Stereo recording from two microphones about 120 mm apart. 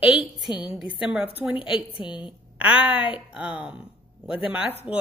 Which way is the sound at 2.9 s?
45° left (ahead or behind).